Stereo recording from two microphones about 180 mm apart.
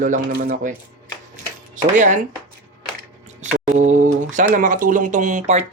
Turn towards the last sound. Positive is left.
turn(degrees=-40)  # may be behind; listen again after turning